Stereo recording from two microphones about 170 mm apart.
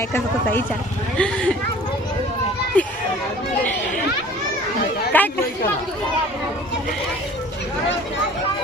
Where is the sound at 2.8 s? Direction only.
10° left (ahead or behind).